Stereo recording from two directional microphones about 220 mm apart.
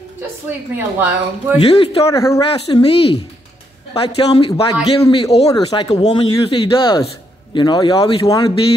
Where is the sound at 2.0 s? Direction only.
15° left (ahead or behind).